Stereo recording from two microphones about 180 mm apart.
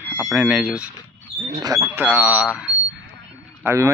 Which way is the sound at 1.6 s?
20° right (ahead or behind).